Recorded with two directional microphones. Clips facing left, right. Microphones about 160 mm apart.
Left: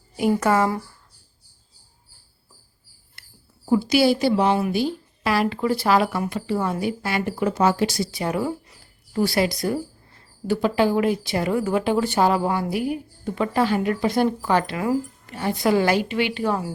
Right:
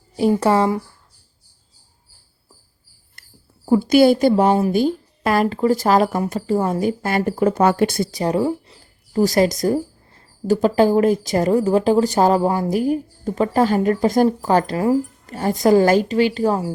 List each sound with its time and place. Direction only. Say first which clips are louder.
0.2 s speech: right 3 dB; 30° right (ahead or behind)
3.2 s dog: right 1 dB; 45° right (ahead or behind)
3.7 s a woman's voice: right 5 dB; 50° right (ahead or behind)
8.2 s speech: right 6 dB; 30° right (ahead or behind)